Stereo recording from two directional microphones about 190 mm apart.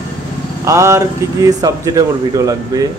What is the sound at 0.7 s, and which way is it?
Speech, 15° right (ahead or behind).